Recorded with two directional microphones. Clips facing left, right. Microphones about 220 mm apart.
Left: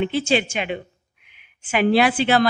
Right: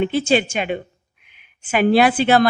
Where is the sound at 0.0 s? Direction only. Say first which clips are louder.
Right 3 dB; 45° right (ahead or behind).